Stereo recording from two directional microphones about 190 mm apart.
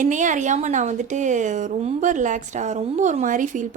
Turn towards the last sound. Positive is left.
turn(degrees=-40)  # may be behind; listen again after turning